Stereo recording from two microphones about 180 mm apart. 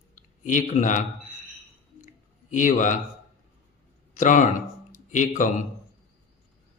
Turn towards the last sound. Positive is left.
turn(degrees=45)  # may be behind; listen again after turning